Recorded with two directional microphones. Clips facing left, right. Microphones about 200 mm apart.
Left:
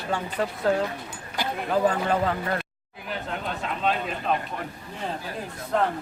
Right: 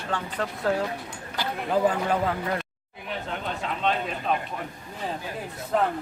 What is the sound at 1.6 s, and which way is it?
Speech, 15° right (ahead or behind).